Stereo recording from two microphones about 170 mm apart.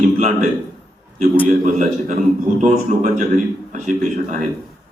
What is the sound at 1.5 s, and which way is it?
A man's voice, 45° right (ahead or behind).